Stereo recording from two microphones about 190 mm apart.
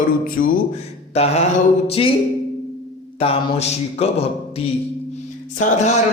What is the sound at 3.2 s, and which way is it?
Speech, 30° left (ahead or behind).